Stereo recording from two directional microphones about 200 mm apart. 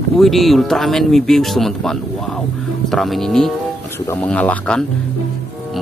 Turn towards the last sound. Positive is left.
turn(degrees=5)  # may be behind; listen again after turning